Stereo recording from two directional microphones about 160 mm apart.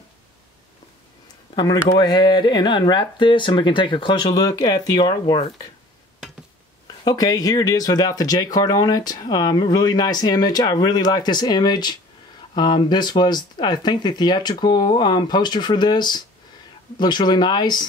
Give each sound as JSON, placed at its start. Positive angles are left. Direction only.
{"t": 1.5, "sound": "speech", "side_deg": 25}
{"t": 7.1, "sound": "speech", "side_deg": 25}